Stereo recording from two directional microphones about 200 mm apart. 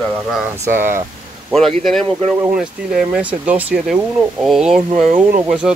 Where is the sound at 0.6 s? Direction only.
10° right (ahead or behind).